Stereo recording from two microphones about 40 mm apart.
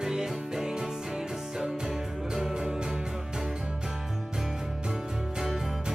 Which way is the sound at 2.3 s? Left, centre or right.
Centre.